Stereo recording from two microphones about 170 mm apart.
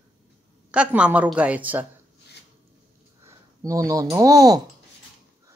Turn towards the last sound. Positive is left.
turn(degrees=-20)  # may be behind; listen again after turning